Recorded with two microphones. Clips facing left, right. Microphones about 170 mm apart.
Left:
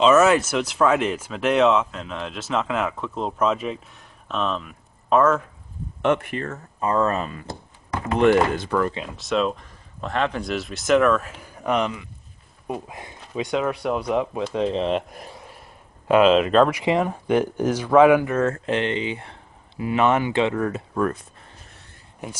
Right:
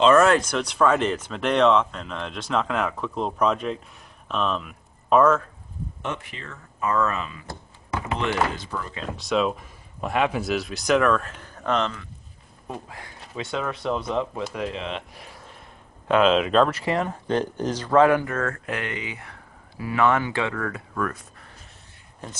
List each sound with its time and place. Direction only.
0.0 s speech: 5° left (ahead or behind)
6.0 s speech: 60° left (ahead or behind)
6.8 s speech: 30° left (ahead or behind)
8.2 s speech: 55° left (ahead or behind)
9.1 s speech: centre (ahead or behind); by 15.2 s 45° left (ahead or behind)
16.1 s speech: 5° left (ahead or behind)
16.7 s speech: 15° left (ahead or behind)